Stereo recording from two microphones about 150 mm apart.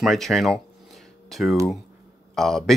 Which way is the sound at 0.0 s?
Centre (ahead or behind).